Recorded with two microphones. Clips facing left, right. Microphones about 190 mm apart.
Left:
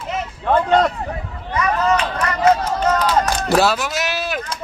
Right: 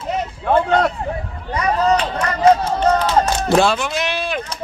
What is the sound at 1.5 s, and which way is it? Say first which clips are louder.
Run: right 1 dB; 30° right (ahead or behind).